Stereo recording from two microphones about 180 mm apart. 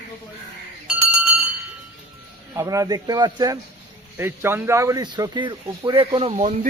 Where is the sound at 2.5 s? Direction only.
20° right (ahead or behind).